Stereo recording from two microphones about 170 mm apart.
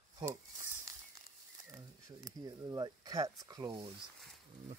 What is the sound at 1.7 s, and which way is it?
Speech, 20° right (ahead or behind).